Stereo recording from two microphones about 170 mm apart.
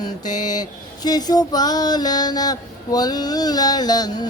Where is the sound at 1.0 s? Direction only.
25° left (ahead or behind).